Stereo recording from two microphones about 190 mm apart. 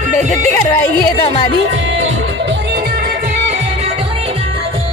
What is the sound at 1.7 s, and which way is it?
Music, 90° right.